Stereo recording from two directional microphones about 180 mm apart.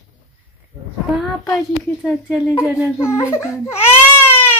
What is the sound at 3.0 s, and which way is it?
Speech, 15° left (ahead or behind).